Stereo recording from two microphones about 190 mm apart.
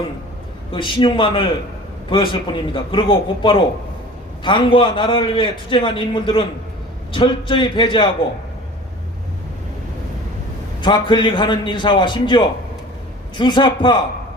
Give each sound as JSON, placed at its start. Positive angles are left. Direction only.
{"t": 0.7, "sound": "a man's voice", "side_deg": 25}
{"t": 10.8, "sound": "a man's voice", "side_deg": 25}